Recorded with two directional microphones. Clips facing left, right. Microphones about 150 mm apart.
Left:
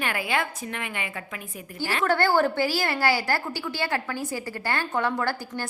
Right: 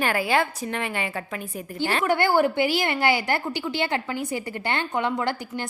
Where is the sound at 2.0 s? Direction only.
15° right (ahead or behind).